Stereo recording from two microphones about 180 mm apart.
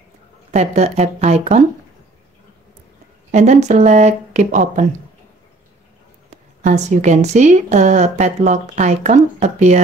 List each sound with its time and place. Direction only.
0.5 s speech: 40° right (ahead or behind)
3.3 s speech: 40° right (ahead or behind)
6.6 s speech: 40° right (ahead or behind)